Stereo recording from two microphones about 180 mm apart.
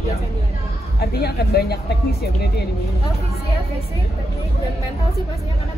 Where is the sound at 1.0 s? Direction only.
60° left (ahead or behind).